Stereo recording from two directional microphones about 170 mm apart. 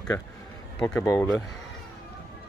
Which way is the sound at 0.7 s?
15° left (ahead or behind).